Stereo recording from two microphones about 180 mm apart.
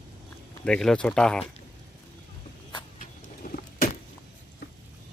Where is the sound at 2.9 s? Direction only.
55° left (ahead or behind).